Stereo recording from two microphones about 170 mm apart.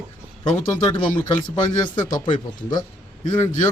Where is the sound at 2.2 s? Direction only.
25° left (ahead or behind).